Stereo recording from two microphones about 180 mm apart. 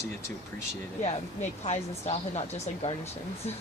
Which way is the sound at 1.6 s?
40° left (ahead or behind).